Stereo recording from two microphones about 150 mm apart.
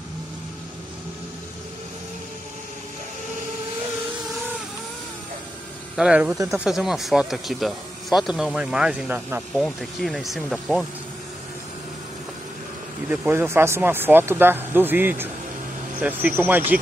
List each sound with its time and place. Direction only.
5.9 s speech: 5° right (ahead or behind)
6.3 s speech: 20° right (ahead or behind)
6.6 s speech: 5° right (ahead or behind)
13.1 s speech: 10° right (ahead or behind)